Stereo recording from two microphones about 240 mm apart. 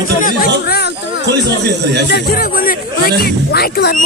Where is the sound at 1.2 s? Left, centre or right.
Right.